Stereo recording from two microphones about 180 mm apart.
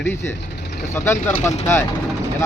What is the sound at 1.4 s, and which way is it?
Speech, 40° left (ahead or behind).